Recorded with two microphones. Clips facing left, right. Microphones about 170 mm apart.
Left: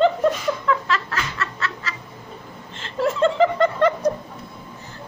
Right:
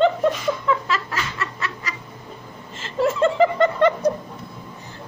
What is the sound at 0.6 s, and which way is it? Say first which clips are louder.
Snicker: even; 5° right (ahead or behind).